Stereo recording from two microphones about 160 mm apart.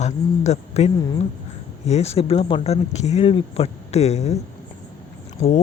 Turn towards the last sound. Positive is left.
turn(degrees=35)  # may be behind; listen again after turning